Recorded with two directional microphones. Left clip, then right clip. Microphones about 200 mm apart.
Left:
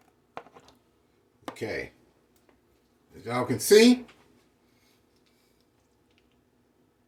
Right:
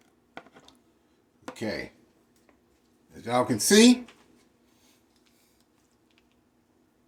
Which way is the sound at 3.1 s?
35° right (ahead or behind).